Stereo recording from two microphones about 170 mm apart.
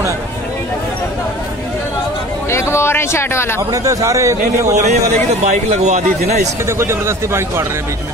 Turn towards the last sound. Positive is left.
turn(degrees=-15)  # may be behind; listen again after turning